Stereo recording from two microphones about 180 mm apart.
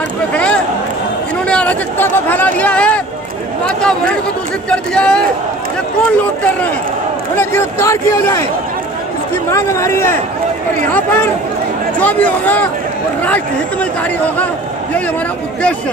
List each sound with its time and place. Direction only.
0.3 s a man's voice: 5° left (ahead or behind)
7.3 s speech: 15° left (ahead or behind)
9.5 s speech: 15° left (ahead or behind)
12.0 s speech: 10° left (ahead or behind)